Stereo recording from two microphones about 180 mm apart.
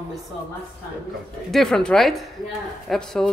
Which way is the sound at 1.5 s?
Centre (ahead or behind).